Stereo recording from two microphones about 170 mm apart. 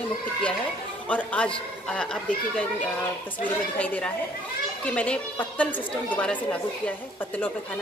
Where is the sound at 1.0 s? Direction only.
10° left (ahead or behind).